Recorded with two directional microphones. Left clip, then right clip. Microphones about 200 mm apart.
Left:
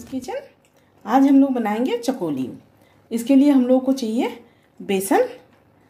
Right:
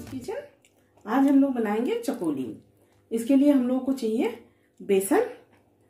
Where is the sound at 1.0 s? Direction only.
50° left (ahead or behind).